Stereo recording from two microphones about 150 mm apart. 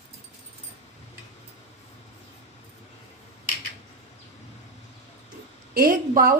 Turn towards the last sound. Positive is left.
turn(degrees=-70)  # may be behind; listen again after turning